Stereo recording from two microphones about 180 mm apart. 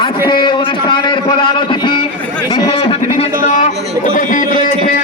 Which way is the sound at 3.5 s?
45° left (ahead or behind).